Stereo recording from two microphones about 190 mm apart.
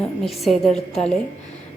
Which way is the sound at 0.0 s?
Centre (ahead or behind).